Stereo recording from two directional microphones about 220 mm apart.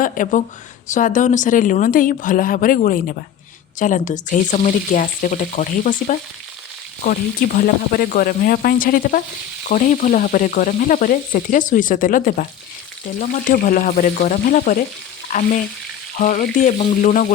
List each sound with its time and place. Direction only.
0.0 s speech: 35° left (ahead or behind)